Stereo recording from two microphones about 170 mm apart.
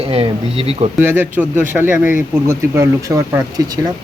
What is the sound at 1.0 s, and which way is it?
Speech, 10° right (ahead or behind).